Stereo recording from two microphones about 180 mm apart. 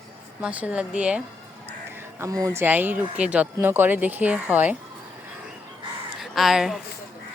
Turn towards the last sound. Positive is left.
turn(degrees=0)  # may be behind; listen again after turning